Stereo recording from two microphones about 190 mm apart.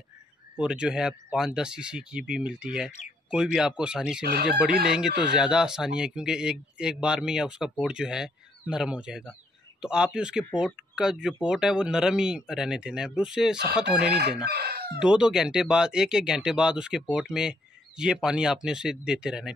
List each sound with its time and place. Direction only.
0.6 s speech: 5° right (ahead or behind)
4.3 s chicken: 55° right (ahead or behind)
4.8 s speech: 5° right (ahead or behind)
14.5 s chicken: 55° right (ahead or behind)
15.0 s speech: 5° right (ahead or behind)